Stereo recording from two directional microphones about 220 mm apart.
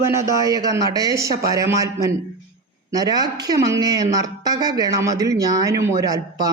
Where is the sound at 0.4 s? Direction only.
15° right (ahead or behind).